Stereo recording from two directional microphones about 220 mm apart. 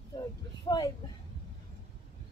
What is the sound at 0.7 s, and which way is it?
Speech, 20° left (ahead or behind).